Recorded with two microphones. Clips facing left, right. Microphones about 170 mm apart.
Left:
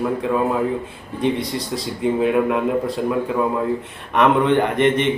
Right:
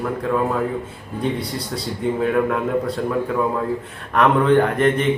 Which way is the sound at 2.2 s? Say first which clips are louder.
Left 1 dB; 15° left (ahead or behind).